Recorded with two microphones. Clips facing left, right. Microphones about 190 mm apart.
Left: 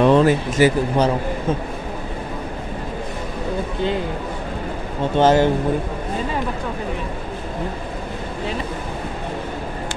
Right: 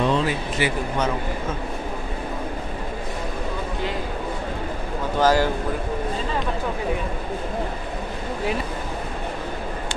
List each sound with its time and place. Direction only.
0.0 s speech: 55° left (ahead or behind); by 1.1 s 35° left (ahead or behind)
5.1 s speech: 25° left (ahead or behind)